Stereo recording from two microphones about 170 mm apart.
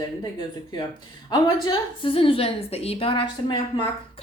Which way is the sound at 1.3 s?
30° left (ahead or behind).